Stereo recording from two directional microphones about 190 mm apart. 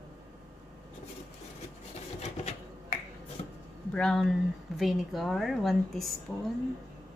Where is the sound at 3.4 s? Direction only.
35° left (ahead or behind).